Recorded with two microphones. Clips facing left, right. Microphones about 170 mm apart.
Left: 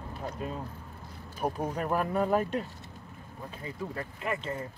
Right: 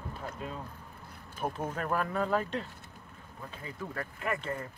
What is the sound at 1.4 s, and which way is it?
Speech, 5° left (ahead or behind).